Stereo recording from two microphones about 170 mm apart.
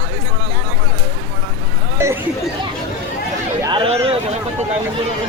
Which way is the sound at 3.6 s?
30° right (ahead or behind).